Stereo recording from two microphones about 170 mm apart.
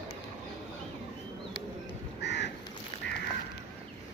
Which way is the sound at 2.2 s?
90° left.